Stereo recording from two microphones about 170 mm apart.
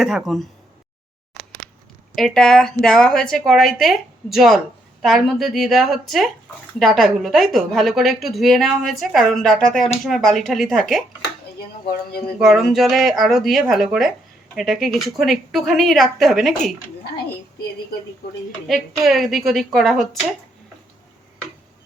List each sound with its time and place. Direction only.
0.0 s a woman's voice: centre (ahead or behind)
2.1 s a woman's voice: 5° left (ahead or behind)
12.4 s a woman's voice: centre (ahead or behind)
17.0 s a child's voice: 75° left (ahead or behind)
18.7 s a woman's voice: centre (ahead or behind)